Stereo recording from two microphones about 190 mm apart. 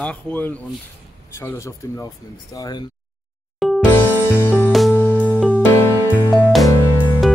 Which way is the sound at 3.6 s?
Centre (ahead or behind).